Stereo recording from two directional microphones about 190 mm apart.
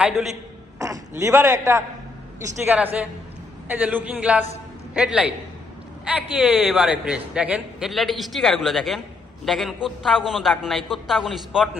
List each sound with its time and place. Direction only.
0.0 s a man's voice: centre (ahead or behind)
0.8 s a man's voice: 15° right (ahead or behind); by 11.7 s centre (ahead or behind)